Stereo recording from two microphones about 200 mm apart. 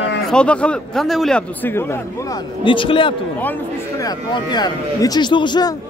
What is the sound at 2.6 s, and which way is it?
A man's voice, 25° left (ahead or behind).